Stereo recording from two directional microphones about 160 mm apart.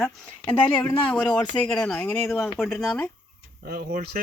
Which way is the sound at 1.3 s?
5° left (ahead or behind).